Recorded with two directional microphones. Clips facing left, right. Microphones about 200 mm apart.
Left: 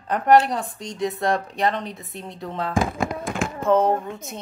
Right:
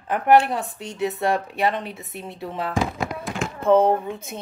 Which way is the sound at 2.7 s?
50° left (ahead or behind).